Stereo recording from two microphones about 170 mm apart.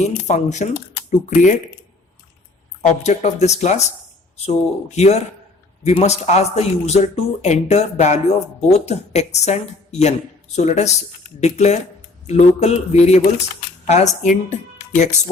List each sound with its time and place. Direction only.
0.0 s speech: 45° left (ahead or behind)
2.8 s a woman's voice: 45° left (ahead or behind)